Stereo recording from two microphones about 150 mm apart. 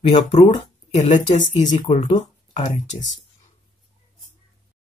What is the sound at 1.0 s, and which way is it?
Speech, 55° left (ahead or behind).